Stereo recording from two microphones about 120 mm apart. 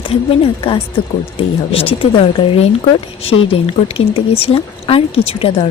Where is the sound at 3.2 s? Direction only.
50° left (ahead or behind).